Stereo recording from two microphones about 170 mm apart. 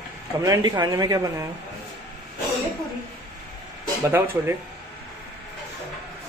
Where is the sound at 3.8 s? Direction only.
15° right (ahead or behind).